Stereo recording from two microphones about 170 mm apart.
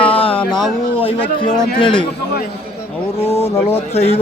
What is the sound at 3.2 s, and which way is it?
Speech, 15° left (ahead or behind).